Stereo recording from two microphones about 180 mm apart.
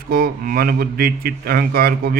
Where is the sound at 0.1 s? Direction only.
55° right (ahead or behind).